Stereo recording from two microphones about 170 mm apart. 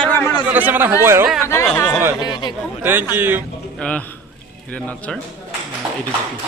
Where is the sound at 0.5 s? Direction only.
10° right (ahead or behind).